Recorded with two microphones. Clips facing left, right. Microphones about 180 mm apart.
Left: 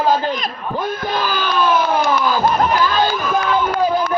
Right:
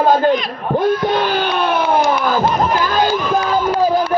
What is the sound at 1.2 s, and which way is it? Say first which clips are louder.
Speech: right 2 dB; 65° right (ahead or behind).